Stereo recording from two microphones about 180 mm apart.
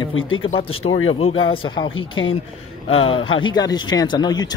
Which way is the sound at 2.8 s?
30° left (ahead or behind).